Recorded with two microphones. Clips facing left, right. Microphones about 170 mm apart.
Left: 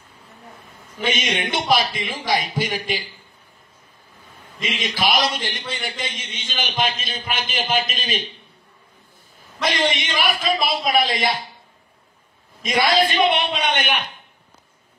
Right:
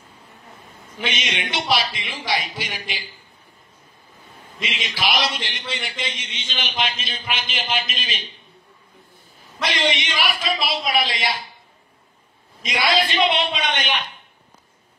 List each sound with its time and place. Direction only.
1.0 s a man's voice: 50° left (ahead or behind)
4.6 s a man's voice: 50° left (ahead or behind)
9.7 s a man's voice: 50° left (ahead or behind)
12.6 s a man's voice: 50° left (ahead or behind)